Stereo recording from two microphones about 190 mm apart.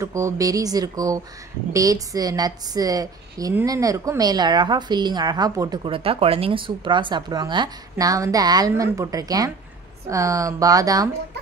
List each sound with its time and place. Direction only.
0.0 s a woman's voice: 15° right (ahead or behind)